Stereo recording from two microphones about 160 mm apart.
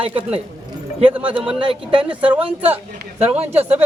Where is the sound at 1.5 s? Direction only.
30° right (ahead or behind).